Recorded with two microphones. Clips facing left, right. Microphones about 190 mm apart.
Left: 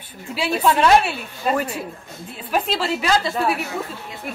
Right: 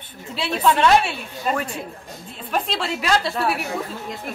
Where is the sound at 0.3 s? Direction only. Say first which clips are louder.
Left 1 dB; 5° left (ahead or behind).